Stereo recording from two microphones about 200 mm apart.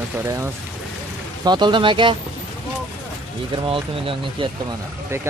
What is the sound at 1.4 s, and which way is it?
Speech, 20° right (ahead or behind).